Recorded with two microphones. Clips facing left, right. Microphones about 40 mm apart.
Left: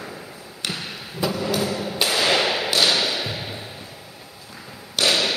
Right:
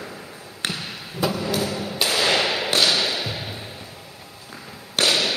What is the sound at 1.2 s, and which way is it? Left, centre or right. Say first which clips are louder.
Thump: left 1 dB; centre.